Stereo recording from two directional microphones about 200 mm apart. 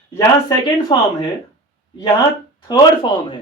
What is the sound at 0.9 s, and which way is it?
Speech, 25° left (ahead or behind).